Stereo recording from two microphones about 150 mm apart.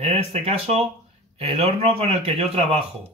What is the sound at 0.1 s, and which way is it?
Speech, 45° right (ahead or behind).